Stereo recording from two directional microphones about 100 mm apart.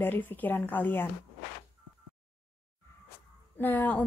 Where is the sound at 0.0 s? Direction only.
20° left (ahead or behind).